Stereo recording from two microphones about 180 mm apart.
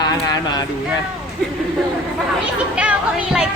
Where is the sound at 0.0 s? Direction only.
20° left (ahead or behind).